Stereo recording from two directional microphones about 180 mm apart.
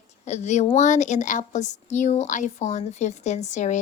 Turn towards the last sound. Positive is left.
turn(degrees=40)  # may be behind; listen again after turning